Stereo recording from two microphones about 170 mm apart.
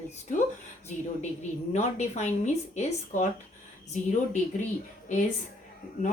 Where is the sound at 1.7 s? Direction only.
40° left (ahead or behind).